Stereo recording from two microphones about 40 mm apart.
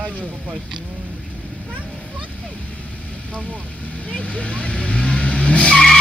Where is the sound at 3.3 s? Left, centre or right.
Left.